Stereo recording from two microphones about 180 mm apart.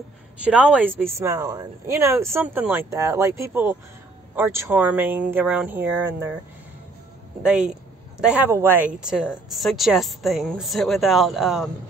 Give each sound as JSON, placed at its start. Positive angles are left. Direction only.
{"t": 0.4, "sound": "speech", "side_deg": -5}
{"t": 1.2, "sound": "speech", "side_deg": -20}
{"t": 8.2, "sound": "speech", "side_deg": -5}